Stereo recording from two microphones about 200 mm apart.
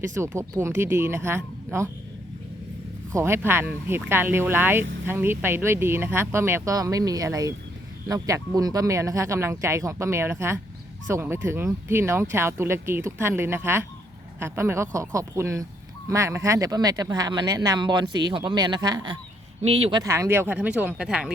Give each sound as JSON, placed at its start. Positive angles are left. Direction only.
{"t": 0.2, "sound": "speech", "side_deg": -15}
{"t": 3.1, "sound": "speech", "side_deg": -15}